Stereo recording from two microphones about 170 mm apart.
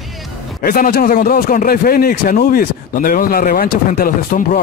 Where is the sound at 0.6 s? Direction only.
65° left (ahead or behind).